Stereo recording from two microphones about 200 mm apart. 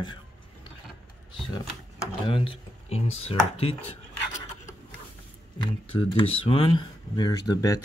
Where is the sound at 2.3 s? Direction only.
25° left (ahead or behind).